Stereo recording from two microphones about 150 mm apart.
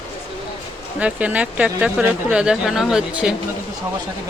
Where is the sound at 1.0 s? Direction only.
10° right (ahead or behind).